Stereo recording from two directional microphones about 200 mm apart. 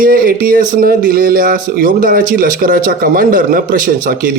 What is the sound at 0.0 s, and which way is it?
A man's voice, 45° right (ahead or behind).